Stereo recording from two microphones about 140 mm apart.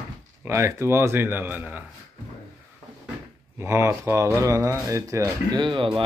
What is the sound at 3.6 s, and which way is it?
Speech, 20° right (ahead or behind).